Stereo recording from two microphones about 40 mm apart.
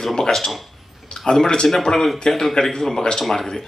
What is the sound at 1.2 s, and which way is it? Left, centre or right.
Speech, centre.